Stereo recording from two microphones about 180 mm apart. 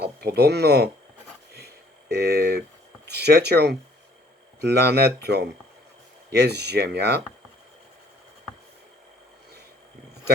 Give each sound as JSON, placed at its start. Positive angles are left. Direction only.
{"t": 0.0, "sound": "speech", "side_deg": -60}
{"t": 1.5, "sound": "a sound", "side_deg": -65}
{"t": 3.1, "sound": "speech", "side_deg": -65}
{"t": 4.8, "sound": "speech", "side_deg": -65}